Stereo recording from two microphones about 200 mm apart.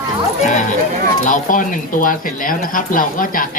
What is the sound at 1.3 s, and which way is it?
Speech, 40° left (ahead or behind).